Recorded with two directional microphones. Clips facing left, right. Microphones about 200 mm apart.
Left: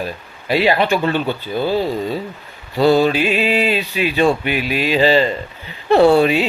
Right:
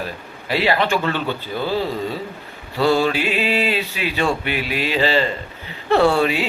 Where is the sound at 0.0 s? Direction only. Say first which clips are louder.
Left 3 dB; 15° left (ahead or behind).